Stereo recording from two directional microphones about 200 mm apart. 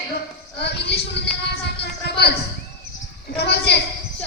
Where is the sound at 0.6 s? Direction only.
55° left (ahead or behind).